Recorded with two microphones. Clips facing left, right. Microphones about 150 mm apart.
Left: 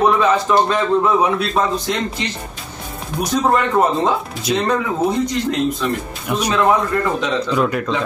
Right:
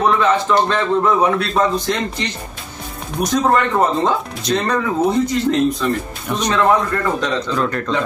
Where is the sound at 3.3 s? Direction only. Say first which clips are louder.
Even; 5° left (ahead or behind).